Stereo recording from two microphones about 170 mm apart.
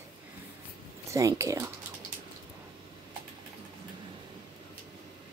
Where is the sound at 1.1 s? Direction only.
20° right (ahead or behind).